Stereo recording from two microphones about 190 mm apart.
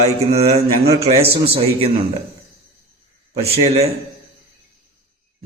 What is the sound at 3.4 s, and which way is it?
Speech, 30° right (ahead or behind).